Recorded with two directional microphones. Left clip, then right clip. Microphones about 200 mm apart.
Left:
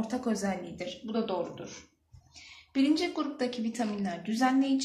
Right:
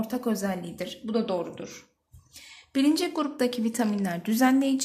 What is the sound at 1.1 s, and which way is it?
Speech, 55° right (ahead or behind).